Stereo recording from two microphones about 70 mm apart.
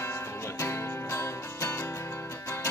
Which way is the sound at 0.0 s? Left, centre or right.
Left.